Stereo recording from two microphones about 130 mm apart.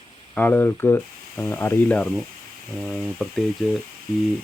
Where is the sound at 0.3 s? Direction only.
15° left (ahead or behind).